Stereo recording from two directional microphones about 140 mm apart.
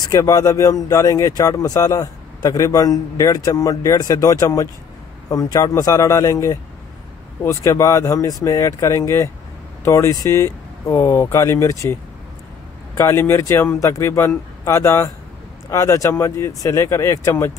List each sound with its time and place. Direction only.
0.0 s speech: 25° left (ahead or behind)